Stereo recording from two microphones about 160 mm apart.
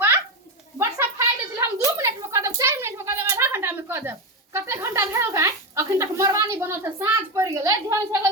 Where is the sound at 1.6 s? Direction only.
15° right (ahead or behind).